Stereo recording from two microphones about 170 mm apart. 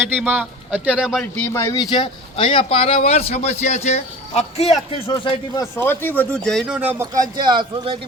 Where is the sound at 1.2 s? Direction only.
10° left (ahead or behind); by 5.0 s 35° left (ahead or behind).